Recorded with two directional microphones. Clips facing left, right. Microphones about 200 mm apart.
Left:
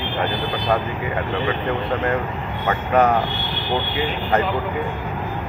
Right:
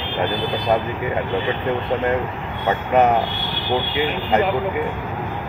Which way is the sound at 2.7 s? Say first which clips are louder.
Right 1 dB; 20° right (ahead or behind).